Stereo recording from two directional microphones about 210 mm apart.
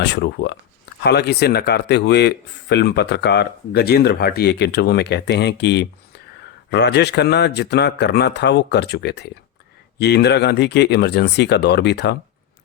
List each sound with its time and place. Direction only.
0.0 s speech: 55° left (ahead or behind)